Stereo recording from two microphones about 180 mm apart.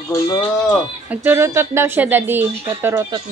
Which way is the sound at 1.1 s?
10° right (ahead or behind).